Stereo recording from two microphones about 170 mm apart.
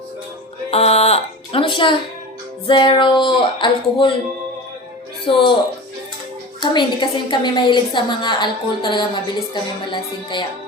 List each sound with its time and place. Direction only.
0.7 s a woman's voice: 35° left (ahead or behind)
5.2 s speech: 30° left (ahead or behind)
6.6 s a woman's voice: 25° left (ahead or behind)